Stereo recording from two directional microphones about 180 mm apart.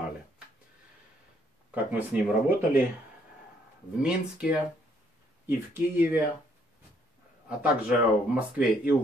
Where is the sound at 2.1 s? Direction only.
10° right (ahead or behind).